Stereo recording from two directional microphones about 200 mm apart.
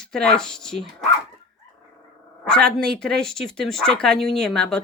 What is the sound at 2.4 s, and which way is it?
Speech, 5° left (ahead or behind).